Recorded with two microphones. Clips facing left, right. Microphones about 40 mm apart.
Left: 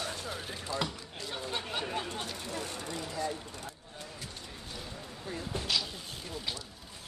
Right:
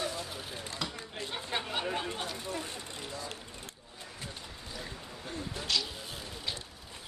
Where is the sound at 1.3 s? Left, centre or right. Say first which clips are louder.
Right 1 dB; centre.